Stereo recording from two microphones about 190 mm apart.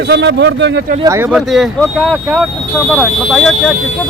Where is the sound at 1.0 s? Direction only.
15° right (ahead or behind).